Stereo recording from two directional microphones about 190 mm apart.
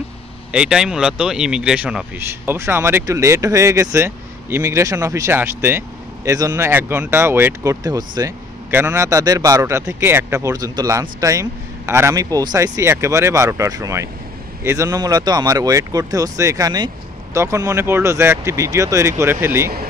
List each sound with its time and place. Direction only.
0.5 s speech: 5° right (ahead or behind)